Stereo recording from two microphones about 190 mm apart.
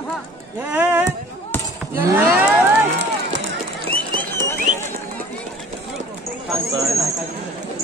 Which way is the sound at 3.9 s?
25° right (ahead or behind).